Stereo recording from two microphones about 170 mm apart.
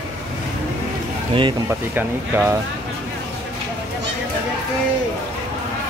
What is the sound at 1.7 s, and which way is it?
Speech, 15° right (ahead or behind).